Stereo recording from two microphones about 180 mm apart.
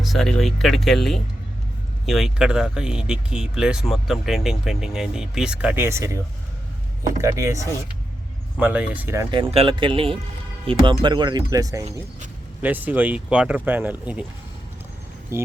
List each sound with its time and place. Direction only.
0.0 s speech: centre (ahead or behind)
7.2 s speech: 15° right (ahead or behind)
9.3 s speech: 30° right (ahead or behind); by 14.3 s 5° right (ahead or behind)
15.3 s speech: 15° right (ahead or behind)